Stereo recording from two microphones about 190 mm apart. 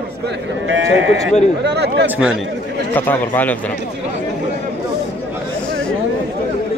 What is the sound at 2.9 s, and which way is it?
Speech, 10° left (ahead or behind).